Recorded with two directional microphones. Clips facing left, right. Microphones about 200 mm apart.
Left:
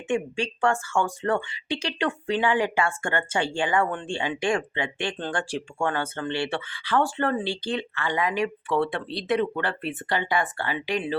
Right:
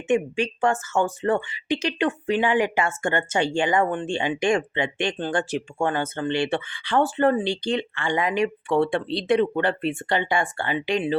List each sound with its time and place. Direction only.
0.1 s speech: 20° right (ahead or behind)